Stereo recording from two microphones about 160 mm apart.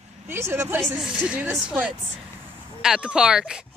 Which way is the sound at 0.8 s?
Centre (ahead or behind).